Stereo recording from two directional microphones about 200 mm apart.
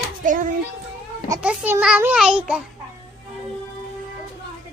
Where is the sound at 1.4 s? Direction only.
5° right (ahead or behind).